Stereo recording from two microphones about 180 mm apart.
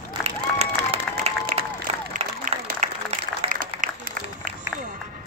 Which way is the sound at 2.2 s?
45° right (ahead or behind).